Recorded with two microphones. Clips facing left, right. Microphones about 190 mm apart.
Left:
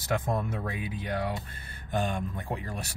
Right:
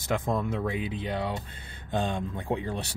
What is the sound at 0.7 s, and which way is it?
Speech, 20° right (ahead or behind).